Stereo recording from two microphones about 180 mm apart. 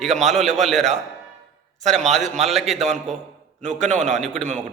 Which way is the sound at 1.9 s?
Centre (ahead or behind).